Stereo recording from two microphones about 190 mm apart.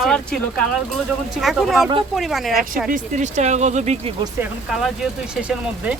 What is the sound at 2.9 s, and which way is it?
Speech, 40° right (ahead or behind).